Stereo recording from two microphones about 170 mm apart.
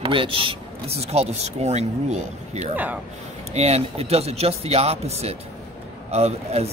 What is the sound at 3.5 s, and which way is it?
Speech, 40° right (ahead or behind).